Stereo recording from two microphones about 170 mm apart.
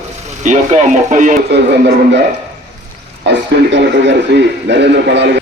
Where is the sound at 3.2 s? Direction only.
90° right.